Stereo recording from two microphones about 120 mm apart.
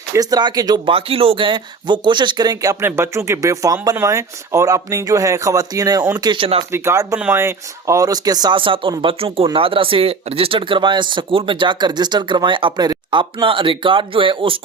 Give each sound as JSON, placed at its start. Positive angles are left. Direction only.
{"t": 0.1, "sound": "speech", "side_deg": -30}
{"t": 0.9, "sound": "speech", "side_deg": -50}
{"t": 6.4, "sound": "speech", "side_deg": -50}
{"t": 6.7, "sound": "speech", "side_deg": -20}